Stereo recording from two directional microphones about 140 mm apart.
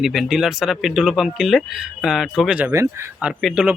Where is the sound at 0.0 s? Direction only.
Centre (ahead or behind).